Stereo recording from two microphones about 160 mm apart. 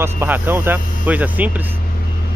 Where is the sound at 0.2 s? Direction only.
15° right (ahead or behind).